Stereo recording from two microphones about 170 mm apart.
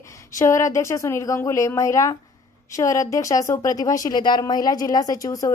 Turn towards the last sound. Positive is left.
turn(degrees=20)  # may be behind; listen again after turning